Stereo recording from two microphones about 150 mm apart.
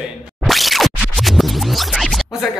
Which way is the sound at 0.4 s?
Centre (ahead or behind).